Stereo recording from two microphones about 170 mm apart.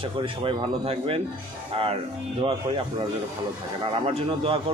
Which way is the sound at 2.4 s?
35° right (ahead or behind).